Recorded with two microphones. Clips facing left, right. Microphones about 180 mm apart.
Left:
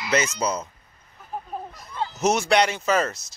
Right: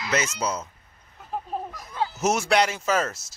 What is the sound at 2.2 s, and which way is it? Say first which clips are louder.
Speech: left 2 dB; 5° right (ahead or behind).